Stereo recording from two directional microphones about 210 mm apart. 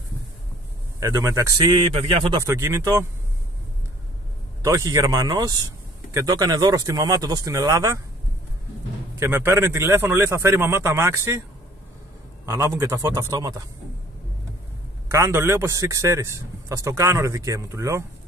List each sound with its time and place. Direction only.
0.9 s a man's voice: 15° right (ahead or behind)
2.4 s a man's voice: 15° right (ahead or behind)
4.6 s a man's voice: 15° right (ahead or behind)
9.2 s a man's voice: 10° right (ahead or behind)
12.4 s a man's voice: 10° right (ahead or behind)
15.0 s a man's voice: 15° right (ahead or behind)